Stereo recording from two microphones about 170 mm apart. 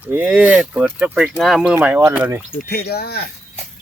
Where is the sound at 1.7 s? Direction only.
15° right (ahead or behind).